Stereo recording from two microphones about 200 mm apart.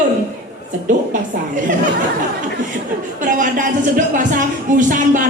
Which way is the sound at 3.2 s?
40° right (ahead or behind).